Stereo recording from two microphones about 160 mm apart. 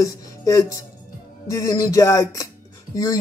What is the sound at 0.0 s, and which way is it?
Speech, 20° left (ahead or behind).